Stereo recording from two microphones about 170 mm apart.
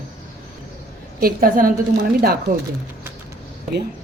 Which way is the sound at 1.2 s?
60° right (ahead or behind).